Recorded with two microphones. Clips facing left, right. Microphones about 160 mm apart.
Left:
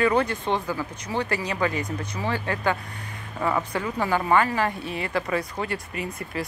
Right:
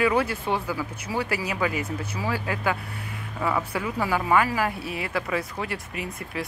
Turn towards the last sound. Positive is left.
turn(degrees=0)  # may be behind; listen again after turning